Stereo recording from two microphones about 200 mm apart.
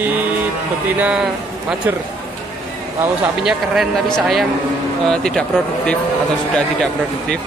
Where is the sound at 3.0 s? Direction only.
Centre (ahead or behind).